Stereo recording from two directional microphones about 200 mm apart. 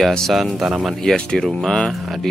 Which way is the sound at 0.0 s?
Centre (ahead or behind).